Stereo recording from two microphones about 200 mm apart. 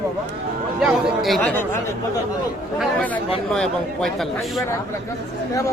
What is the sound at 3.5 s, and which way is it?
Speech, centre (ahead or behind).